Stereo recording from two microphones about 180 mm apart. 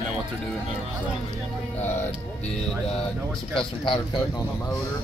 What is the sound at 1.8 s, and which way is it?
Speech, 10° left (ahead or behind).